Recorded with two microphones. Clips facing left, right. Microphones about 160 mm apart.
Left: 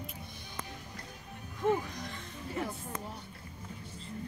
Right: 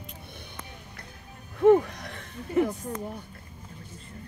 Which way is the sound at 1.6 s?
65° right (ahead or behind).